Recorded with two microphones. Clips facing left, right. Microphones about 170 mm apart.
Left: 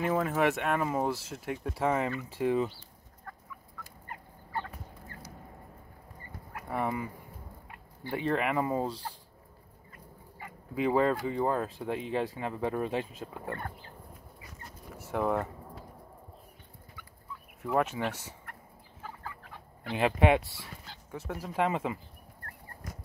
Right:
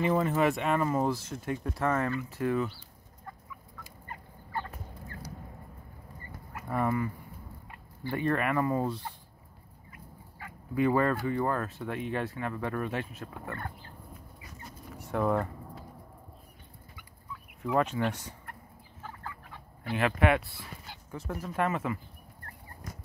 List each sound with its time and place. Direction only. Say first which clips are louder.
0.0 s speech: right 1 dB; 5° left (ahead or behind); by 2.7 s 20° left (ahead or behind)
6.7 s speech: right 3 dB; 10° left (ahead or behind)
8.3 s speech: right 1 dB; 15° left (ahead or behind)
10.4 s speech: right 3 dB; 10° left (ahead or behind)
15.0 s speech: right 1 dB; 5° left (ahead or behind)
17.3 s turkey: right 1 dB; 5° left (ahead or behind)
19.9 s speech: left 1 dB; 20° left (ahead or behind)
21.1 s speech: right 1 dB; 5° left (ahead or behind)
21.6 s speech: even; 20° left (ahead or behind)